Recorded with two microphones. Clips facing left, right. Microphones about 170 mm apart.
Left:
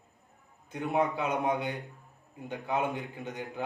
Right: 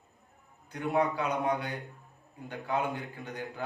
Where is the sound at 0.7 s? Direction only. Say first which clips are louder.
Even; 20° left (ahead or behind).